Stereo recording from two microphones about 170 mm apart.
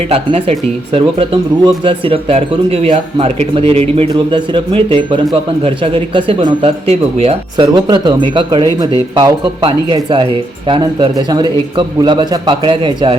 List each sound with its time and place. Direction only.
0.1 s speech: 35° right (ahead or behind)
7.5 s speech: 25° right (ahead or behind)